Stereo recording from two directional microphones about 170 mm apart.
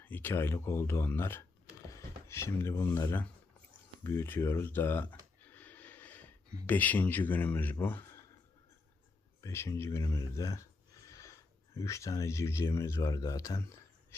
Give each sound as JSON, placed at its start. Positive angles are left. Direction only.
{"t": 0.0, "sound": "speech", "side_deg": 10}
{"t": 5.5, "sound": "a sound", "side_deg": 10}
{"t": 9.4, "sound": "speech", "side_deg": 15}